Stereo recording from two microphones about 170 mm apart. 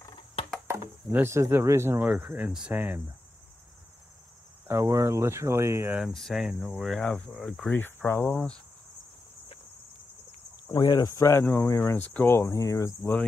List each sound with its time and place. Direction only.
0.0 s a sound: 30° left (ahead or behind)
0.7 s speech: 15° right (ahead or behind)
4.6 s speech: 15° right (ahead or behind)
6.0 s speech: centre (ahead or behind)
10.7 s speech: 25° left (ahead or behind)